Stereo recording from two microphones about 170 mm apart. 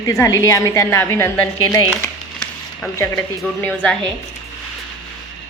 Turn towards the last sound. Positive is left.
turn(degrees=5)  # may be behind; listen again after turning